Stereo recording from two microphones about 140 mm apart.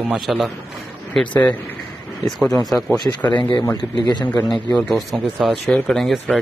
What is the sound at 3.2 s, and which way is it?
Speech, 10° left (ahead or behind).